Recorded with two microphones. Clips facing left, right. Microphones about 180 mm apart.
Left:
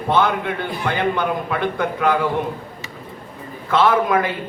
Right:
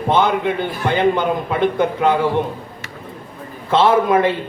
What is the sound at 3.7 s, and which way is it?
Speech, 25° right (ahead or behind).